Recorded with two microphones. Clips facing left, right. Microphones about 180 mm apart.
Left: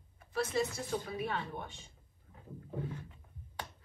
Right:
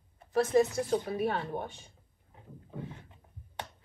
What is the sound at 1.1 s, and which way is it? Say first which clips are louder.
Speech: right 6 dB; 45° right (ahead or behind).